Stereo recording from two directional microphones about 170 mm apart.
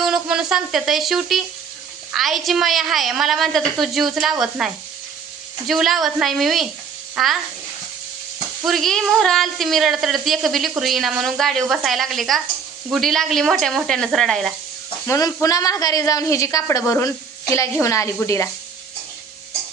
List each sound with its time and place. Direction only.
0.0 s a woman's voice: 5° right (ahead or behind)
8.6 s a woman's voice: centre (ahead or behind)
15.0 s a woman's voice: 15° left (ahead or behind)